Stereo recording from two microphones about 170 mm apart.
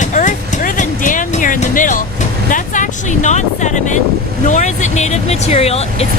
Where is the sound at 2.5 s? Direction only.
50° left (ahead or behind).